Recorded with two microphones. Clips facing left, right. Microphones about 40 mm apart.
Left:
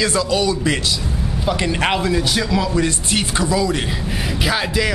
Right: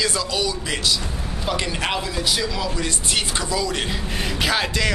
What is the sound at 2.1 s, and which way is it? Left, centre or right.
Speech, centre.